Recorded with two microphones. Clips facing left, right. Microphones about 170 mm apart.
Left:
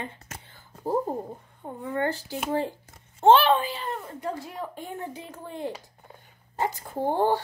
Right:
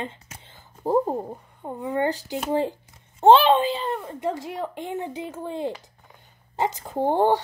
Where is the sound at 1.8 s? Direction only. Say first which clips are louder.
Right 3 dB; 15° right (ahead or behind).